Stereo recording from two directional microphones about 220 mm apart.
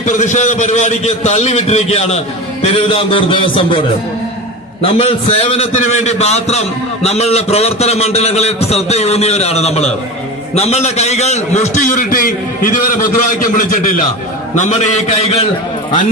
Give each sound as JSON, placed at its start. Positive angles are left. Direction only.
{"t": 0.0, "sound": "a man's voice", "side_deg": 35}
{"t": 4.8, "sound": "a man's voice", "side_deg": 25}